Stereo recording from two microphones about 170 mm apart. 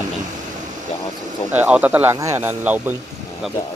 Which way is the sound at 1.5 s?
10° right (ahead or behind).